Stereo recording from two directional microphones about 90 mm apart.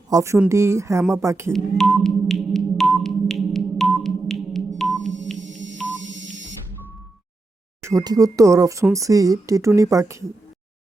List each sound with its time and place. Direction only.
0.1 s speech: 35° right (ahead or behind)
1.5 s music: centre (ahead or behind)
4.8 s telephone dialing: 5° left (ahead or behind)
7.8 s a sound: 30° right (ahead or behind)
8.0 s speech: 40° right (ahead or behind)